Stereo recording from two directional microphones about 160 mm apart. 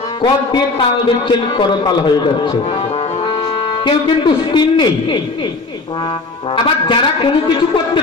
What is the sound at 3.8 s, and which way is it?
A man's voice, 30° left (ahead or behind).